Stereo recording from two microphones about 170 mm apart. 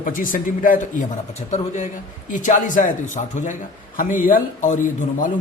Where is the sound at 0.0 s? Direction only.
55° left (ahead or behind).